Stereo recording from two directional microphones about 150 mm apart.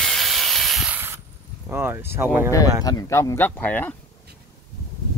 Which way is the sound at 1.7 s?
15° right (ahead or behind).